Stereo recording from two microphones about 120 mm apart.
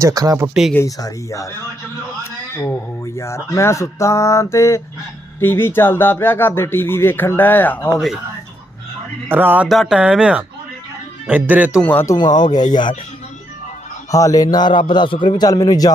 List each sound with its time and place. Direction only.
0.0 s speech: 30° right (ahead or behind)
0.4 s speech: 5° right (ahead or behind)
0.8 s speech: 30° left (ahead or behind)
2.6 s speech: 25° left (ahead or behind)
9.3 s speech: 15° right (ahead or behind)
9.6 s speech: centre (ahead or behind)
11.8 s speech: 15° left (ahead or behind)
12.5 s a man's voice: 35° left (ahead or behind)
14.1 s a man's voice: 30° left (ahead or behind)